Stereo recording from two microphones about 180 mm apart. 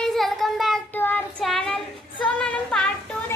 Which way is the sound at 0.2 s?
Centre (ahead or behind).